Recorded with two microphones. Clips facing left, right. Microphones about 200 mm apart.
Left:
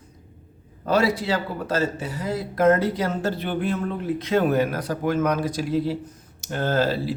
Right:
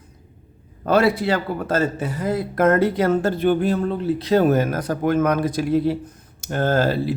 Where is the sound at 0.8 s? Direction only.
55° right (ahead or behind).